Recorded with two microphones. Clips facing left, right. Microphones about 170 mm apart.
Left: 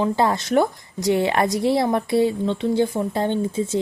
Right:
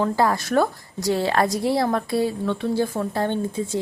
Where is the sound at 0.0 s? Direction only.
20° left (ahead or behind).